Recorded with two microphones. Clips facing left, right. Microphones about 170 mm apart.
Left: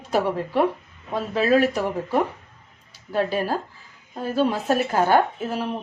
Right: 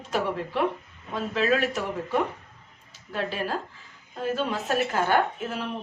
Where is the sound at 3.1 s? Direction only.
40° left (ahead or behind).